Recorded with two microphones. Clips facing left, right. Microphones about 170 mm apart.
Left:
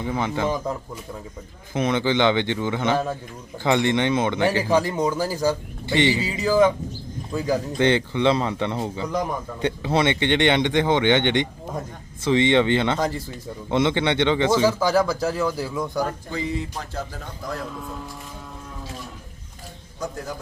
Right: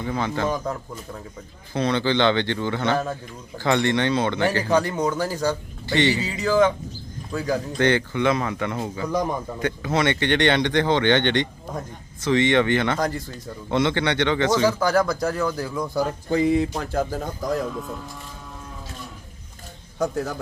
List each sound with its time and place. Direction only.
0.0 s speech: 15° left (ahead or behind)
1.7 s speech: 15° left (ahead or behind)
13.0 s speech: 5° left (ahead or behind)
13.7 s speech: 20° left (ahead or behind)
14.8 s speech: 5° left (ahead or behind)
16.3 s speech: 55° right (ahead or behind); by 17.6 s 40° right (ahead or behind)